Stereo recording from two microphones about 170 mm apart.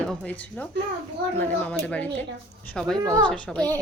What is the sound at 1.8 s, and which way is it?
A woman's voice, 10° left (ahead or behind).